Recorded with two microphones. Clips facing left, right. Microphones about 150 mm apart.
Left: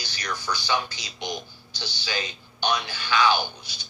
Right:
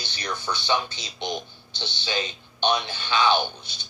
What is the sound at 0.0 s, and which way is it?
A man's voice, 25° right (ahead or behind).